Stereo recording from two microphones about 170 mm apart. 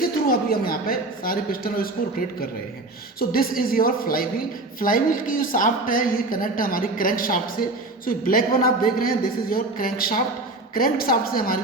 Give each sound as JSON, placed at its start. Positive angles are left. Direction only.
{"t": 0.0, "sound": "a woman's voice", "side_deg": 60}